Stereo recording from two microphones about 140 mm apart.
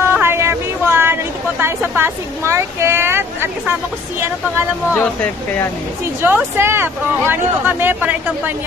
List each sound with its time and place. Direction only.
0.0 s a sound: 15° right (ahead or behind)
4.9 s speech: 10° left (ahead or behind)
6.2 s speech: 15° right (ahead or behind)